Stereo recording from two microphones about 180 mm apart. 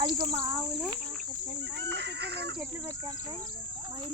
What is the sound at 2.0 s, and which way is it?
Speech, 65° right (ahead or behind).